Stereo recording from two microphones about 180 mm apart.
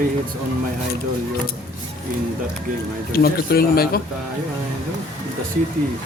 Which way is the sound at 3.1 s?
55° left (ahead or behind).